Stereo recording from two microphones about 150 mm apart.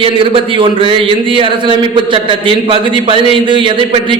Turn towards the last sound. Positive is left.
turn(degrees=-35)  # may be behind; listen again after turning